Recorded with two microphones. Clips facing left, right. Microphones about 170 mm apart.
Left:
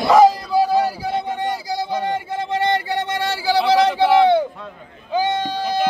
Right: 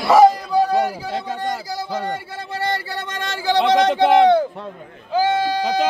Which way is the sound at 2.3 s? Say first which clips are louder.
Left 5 dB; 20° left (ahead or behind).